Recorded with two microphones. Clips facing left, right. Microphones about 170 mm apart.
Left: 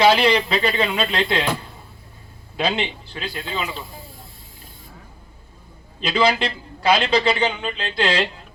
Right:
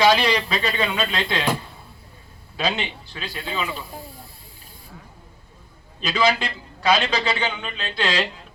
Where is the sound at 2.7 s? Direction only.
30° left (ahead or behind).